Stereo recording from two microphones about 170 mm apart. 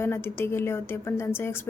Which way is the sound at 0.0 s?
15° left (ahead or behind).